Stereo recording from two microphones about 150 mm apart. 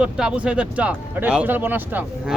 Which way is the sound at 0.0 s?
5° right (ahead or behind).